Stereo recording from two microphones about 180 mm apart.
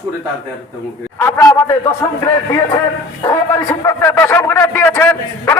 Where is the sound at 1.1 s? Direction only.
15° left (ahead or behind).